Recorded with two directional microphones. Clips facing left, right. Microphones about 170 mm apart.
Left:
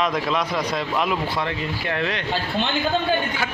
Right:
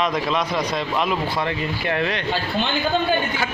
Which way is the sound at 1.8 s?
10° right (ahead or behind).